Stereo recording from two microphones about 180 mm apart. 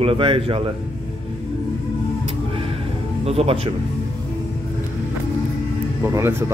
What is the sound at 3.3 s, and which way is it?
Speech, 35° right (ahead or behind).